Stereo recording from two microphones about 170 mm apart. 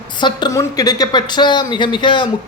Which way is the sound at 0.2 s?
25° left (ahead or behind).